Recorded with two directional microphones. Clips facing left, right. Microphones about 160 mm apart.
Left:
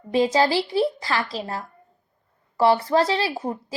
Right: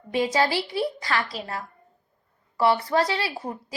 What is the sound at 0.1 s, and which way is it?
A woman's voice, 25° left (ahead or behind).